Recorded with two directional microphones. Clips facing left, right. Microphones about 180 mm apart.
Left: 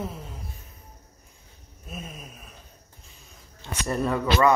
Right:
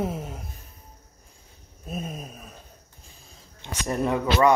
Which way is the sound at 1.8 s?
40° right (ahead or behind).